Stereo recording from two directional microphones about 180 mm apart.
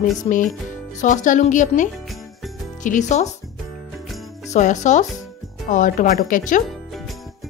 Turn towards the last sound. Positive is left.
turn(degrees=45)  # may be behind; listen again after turning